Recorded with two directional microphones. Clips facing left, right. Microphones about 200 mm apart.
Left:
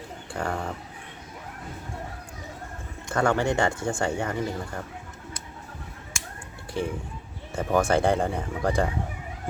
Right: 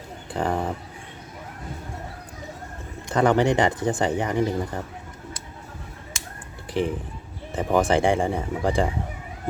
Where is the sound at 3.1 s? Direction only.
20° right (ahead or behind).